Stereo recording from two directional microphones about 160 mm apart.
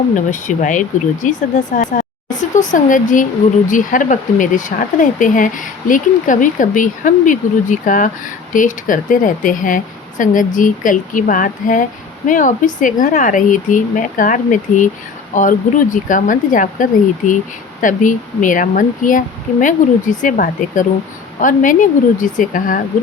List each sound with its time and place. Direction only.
0.3 s speech: 55° left (ahead or behind)